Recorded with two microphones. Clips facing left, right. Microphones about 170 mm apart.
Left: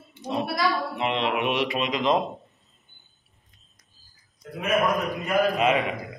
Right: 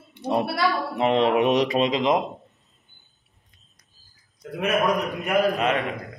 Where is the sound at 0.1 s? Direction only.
60° right (ahead or behind).